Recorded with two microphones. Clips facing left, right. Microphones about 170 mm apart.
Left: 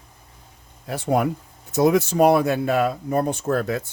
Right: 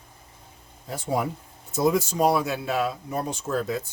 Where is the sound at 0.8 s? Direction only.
70° left (ahead or behind).